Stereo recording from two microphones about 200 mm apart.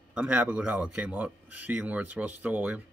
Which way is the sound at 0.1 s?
5° right (ahead or behind).